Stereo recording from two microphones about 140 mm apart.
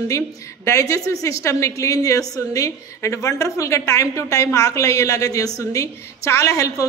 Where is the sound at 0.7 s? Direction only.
20° left (ahead or behind).